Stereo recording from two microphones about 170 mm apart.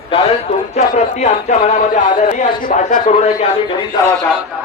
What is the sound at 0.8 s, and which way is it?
Speech, 40° left (ahead or behind).